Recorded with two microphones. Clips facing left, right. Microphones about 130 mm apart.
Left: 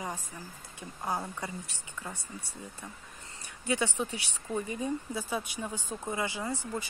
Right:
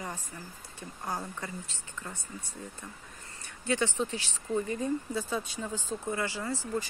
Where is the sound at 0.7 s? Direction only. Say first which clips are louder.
Left 2 dB; 20° left (ahead or behind).